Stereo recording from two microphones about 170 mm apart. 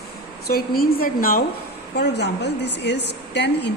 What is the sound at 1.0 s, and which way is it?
Speech, 55° left (ahead or behind).